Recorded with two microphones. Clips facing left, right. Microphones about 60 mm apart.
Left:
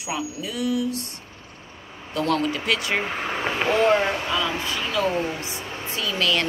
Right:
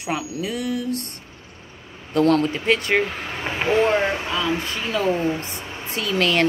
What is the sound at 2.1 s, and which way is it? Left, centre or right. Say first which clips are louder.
Speech: right 5 dB; right.